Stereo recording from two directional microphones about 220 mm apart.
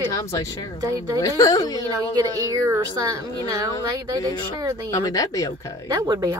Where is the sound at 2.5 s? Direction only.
15° right (ahead or behind).